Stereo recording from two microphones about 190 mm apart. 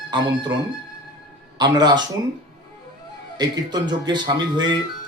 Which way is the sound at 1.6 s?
20° right (ahead or behind).